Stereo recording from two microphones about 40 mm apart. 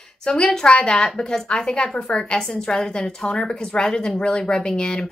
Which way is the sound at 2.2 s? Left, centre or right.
Centre.